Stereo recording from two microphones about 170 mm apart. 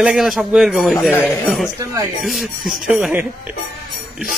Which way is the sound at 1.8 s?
20° right (ahead or behind).